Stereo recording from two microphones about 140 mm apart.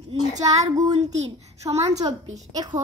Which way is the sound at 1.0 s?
55° right (ahead or behind).